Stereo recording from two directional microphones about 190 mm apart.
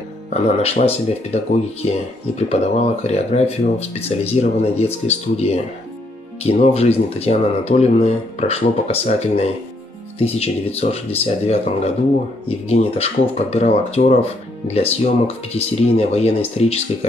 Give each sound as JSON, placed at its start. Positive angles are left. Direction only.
{"t": 0.3, "sound": "speech", "side_deg": 35}
{"t": 2.5, "sound": "speech", "side_deg": 35}